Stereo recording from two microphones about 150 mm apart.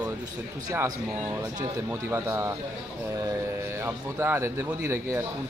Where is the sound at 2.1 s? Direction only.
15° right (ahead or behind).